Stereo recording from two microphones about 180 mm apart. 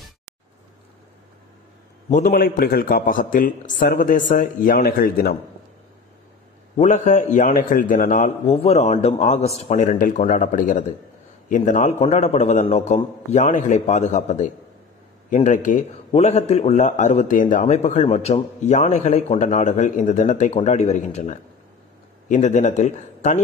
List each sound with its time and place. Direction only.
2.0 s a man's voice: 45° left (ahead or behind)
6.8 s a man's voice: 40° left (ahead or behind)